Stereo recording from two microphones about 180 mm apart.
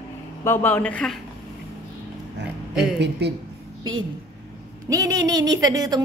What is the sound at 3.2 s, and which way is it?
Speech, 65° right (ahead or behind).